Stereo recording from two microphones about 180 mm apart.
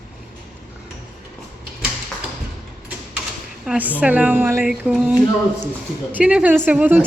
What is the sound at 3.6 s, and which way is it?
A woman's voice, 5° right (ahead or behind).